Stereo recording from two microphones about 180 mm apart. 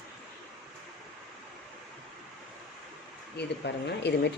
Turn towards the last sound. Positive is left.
turn(degrees=70)  # may be behind; listen again after turning